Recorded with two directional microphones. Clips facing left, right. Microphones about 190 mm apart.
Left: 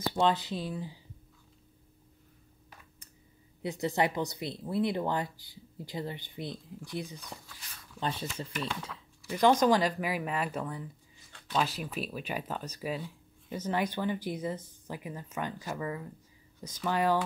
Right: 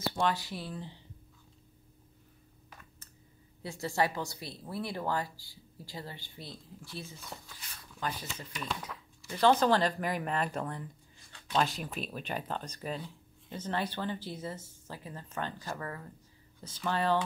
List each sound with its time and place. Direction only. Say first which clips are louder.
0.1 s speech: left 4 dB; 20° left (ahead or behind)
3.6 s speech: left 2 dB; 20° left (ahead or behind)
8.0 s speech: left 3 dB; 25° left (ahead or behind)
9.3 s speech: left 2 dB; 15° left (ahead or behind)